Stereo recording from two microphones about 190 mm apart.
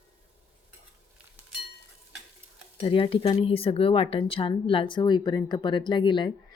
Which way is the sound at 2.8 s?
30° left (ahead or behind).